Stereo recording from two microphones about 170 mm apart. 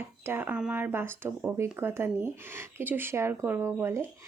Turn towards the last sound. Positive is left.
turn(degrees=-15)  # may be behind; listen again after turning